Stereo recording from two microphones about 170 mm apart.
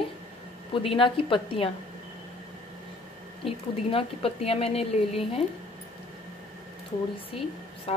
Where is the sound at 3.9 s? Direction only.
35° left (ahead or behind).